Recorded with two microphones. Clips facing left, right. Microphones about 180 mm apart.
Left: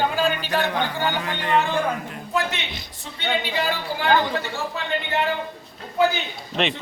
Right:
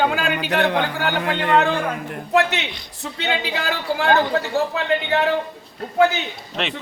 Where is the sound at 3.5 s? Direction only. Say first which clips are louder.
Right 2 dB; 90° right.